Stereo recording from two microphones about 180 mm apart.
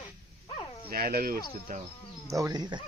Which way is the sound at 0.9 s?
55° right (ahead or behind).